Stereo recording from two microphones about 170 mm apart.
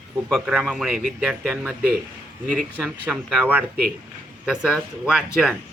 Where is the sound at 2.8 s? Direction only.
Centre (ahead or behind).